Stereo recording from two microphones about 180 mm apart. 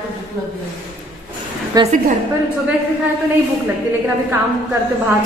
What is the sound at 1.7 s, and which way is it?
Speech, 20° right (ahead or behind).